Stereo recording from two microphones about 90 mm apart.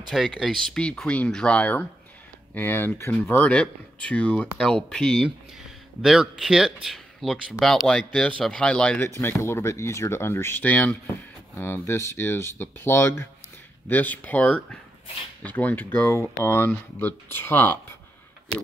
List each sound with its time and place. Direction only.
0.4 s speech: 5° left (ahead or behind)
6.0 s speech: 5° right (ahead or behind)
8.9 s speech: 25° left (ahead or behind)